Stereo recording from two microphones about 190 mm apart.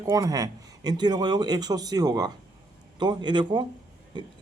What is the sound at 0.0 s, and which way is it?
Speech, 15° right (ahead or behind).